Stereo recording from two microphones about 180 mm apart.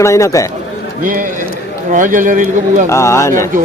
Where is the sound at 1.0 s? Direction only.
50° right (ahead or behind).